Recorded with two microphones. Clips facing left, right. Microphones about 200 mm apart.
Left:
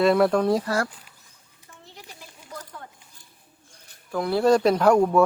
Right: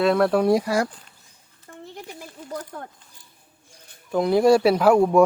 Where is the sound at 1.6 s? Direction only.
55° right (ahead or behind).